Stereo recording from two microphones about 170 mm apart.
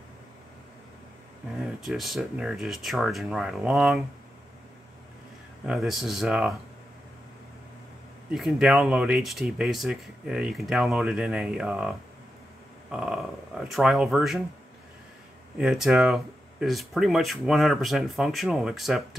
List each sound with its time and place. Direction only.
1.6 s speech: centre (ahead or behind)
5.7 s speech: centre (ahead or behind)
8.3 s speech: 5° right (ahead or behind)
12.9 s speech: 5° right (ahead or behind)
15.5 s speech: centre (ahead or behind)